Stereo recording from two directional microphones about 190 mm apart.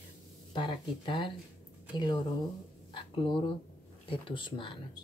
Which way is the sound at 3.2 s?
25° left (ahead or behind).